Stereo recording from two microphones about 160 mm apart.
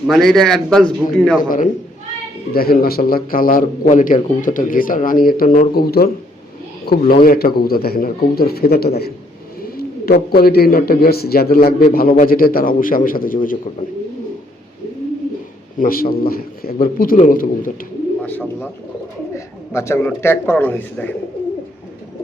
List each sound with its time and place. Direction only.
0.1 s a man's voice: centre (ahead or behind)
1.4 s speech: 55° left (ahead or behind)
2.5 s speech: 70° left (ahead or behind)
7.1 s speech: 65° left (ahead or behind)
9.6 s speech: 70° left (ahead or behind)
15.8 s speech: 65° left (ahead or behind)
18.2 s bird: 10° left (ahead or behind)
19.7 s a man's voice: 15° left (ahead or behind)